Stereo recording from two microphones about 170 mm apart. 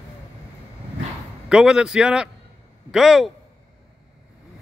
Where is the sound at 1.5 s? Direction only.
5° right (ahead or behind).